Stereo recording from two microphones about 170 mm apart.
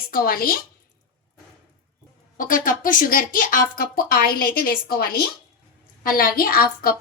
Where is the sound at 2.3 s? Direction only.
55° left (ahead or behind).